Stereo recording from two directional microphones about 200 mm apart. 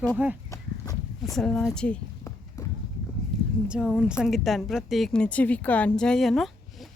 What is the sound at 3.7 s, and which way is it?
A woman's voice, centre (ahead or behind).